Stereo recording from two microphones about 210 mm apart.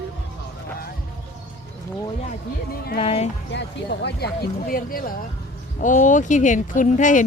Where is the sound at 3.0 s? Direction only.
25° left (ahead or behind).